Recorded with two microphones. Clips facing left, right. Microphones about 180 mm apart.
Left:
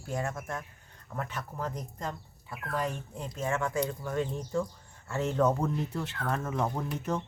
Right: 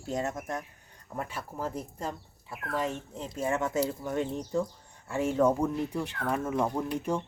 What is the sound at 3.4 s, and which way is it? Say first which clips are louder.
Speech: right 2 dB; 20° right (ahead or behind).